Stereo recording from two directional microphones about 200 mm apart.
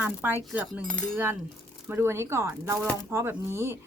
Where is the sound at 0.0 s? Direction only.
10° right (ahead or behind).